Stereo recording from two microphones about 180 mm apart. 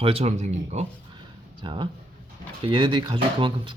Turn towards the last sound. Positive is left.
turn(degrees=-30)  # may be behind; listen again after turning